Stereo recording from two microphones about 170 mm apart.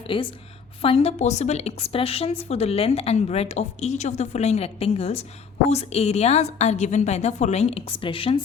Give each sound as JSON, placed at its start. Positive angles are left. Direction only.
{"t": 0.1, "sound": "a woman's voice", "side_deg": 30}